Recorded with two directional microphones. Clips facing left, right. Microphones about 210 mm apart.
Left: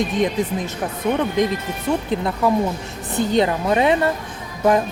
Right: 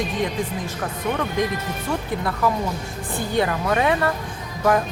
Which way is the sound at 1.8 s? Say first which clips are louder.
Left 5 dB; 20° left (ahead or behind).